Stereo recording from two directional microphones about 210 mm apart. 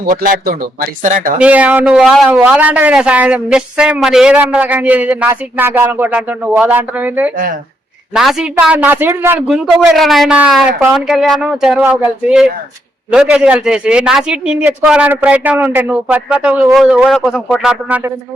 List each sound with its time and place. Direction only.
0.0 s speech: 45° right (ahead or behind)
1.4 s a man's voice: 5° right (ahead or behind)
7.3 s speech: 40° right (ahead or behind)
8.1 s speech: centre (ahead or behind)